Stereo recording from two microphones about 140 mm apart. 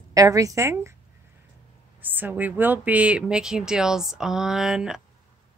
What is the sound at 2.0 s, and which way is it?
Speech, 15° right (ahead or behind).